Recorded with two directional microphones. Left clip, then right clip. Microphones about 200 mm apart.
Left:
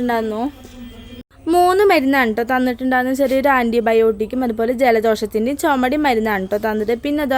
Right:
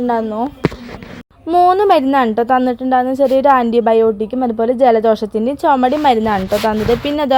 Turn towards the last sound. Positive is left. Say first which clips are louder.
# right 4 dB
turn(degrees=5)  # may be behind; listen again after turning